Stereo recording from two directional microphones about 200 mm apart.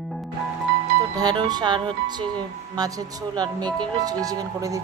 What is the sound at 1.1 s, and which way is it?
Speech, 20° right (ahead or behind).